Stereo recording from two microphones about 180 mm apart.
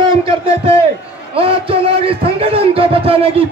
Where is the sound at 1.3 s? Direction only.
30° right (ahead or behind).